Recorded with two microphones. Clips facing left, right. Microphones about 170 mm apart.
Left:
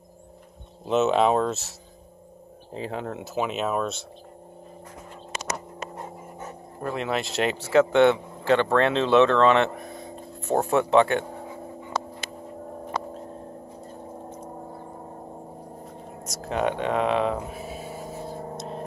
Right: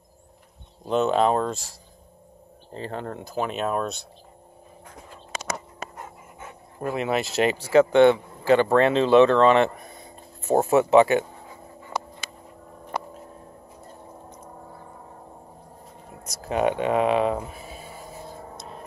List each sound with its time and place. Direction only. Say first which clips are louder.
0.8 s speech: even; 5° left (ahead or behind)
2.7 s speech: left 1 dB; 5° left (ahead or behind)
6.8 s speech: right 2 dB; 5° right (ahead or behind)
14.3 s gong: left 5 dB; 25° left (ahead or behind)
16.3 s speech: right 3 dB; 5° right (ahead or behind)
18.3 s a sound: left 6 dB; 35° left (ahead or behind)